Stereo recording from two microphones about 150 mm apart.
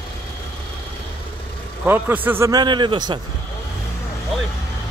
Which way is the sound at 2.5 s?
30° right (ahead or behind).